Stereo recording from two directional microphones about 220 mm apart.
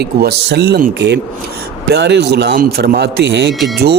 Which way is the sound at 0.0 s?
50° right (ahead or behind).